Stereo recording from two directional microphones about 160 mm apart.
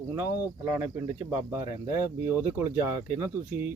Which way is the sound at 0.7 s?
15° right (ahead or behind).